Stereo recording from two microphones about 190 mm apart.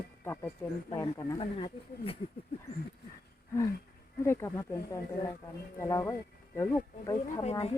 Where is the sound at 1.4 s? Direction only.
30° left (ahead or behind).